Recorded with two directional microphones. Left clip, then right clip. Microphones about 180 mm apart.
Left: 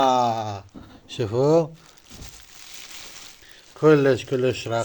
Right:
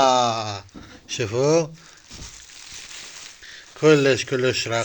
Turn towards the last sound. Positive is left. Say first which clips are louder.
# right 1 dB
turn(degrees=15)  # may be behind; listen again after turning